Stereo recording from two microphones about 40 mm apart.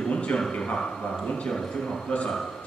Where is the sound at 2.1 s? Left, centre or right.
Left.